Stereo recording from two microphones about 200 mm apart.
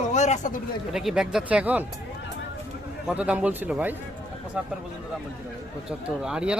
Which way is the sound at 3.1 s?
5° right (ahead or behind).